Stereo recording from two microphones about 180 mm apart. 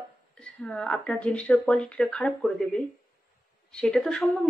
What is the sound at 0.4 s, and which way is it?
A woman's voice, 5° left (ahead or behind).